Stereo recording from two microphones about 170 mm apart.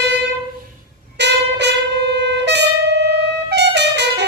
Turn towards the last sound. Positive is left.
turn(degrees=-85)